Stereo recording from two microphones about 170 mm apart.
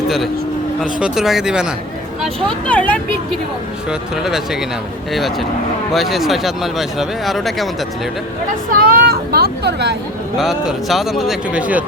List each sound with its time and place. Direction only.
0.8 s speech: 5° right (ahead or behind)
3.8 s speech: centre (ahead or behind)
8.8 s speech: 65° right (ahead or behind); by 10.0 s 80° right
10.3 s speech: centre (ahead or behind)